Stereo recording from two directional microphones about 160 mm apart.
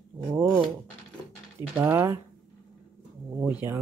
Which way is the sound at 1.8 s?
15° right (ahead or behind).